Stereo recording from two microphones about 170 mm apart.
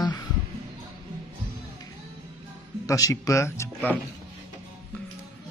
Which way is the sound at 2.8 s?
20° left (ahead or behind).